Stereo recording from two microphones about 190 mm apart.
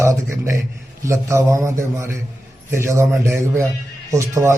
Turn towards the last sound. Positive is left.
turn(degrees=-15)  # may be behind; listen again after turning